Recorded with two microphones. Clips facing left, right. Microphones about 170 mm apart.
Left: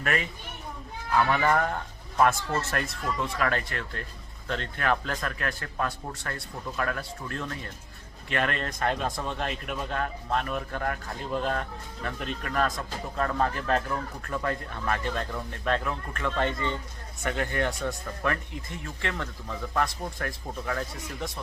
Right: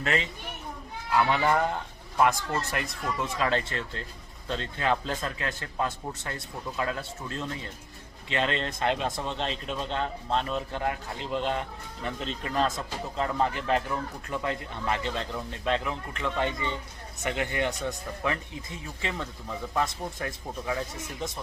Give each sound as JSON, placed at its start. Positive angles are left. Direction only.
{"t": 0.0, "sound": "a child's voice", "side_deg": -25}
{"t": 1.1, "sound": "speech", "side_deg": -15}